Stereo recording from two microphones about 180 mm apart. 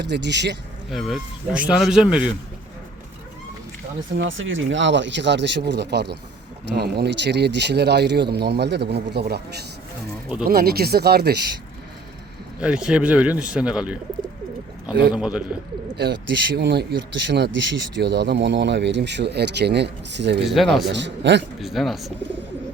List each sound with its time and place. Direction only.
0.0 s speech: 75° right (ahead or behind)
0.9 s speech: centre (ahead or behind)
4.2 s speech: 90° right; by 11.3 s 60° right (ahead or behind)
12.5 s speech: 5° right (ahead or behind)
15.1 s speech: 5° right (ahead or behind)
16.0 s speech: 70° right (ahead or behind)
21.6 s speech: centre (ahead or behind)